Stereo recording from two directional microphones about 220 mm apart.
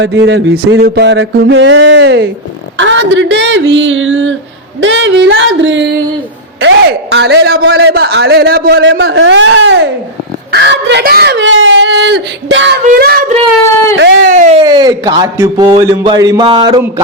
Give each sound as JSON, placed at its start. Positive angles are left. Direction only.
{"t": 0.0, "sound": "mantra", "side_deg": -55}
{"t": 6.6, "sound": "a man's voice", "side_deg": -55}
{"t": 12.8, "sound": "child singing", "side_deg": -40}
{"t": 13.9, "sound": "a man's voice", "side_deg": -50}
{"t": 14.3, "sound": "child singing", "side_deg": -35}
{"t": 14.6, "sound": "speech", "side_deg": -20}